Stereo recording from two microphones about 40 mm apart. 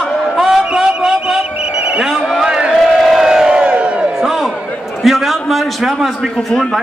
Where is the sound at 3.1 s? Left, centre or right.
Centre.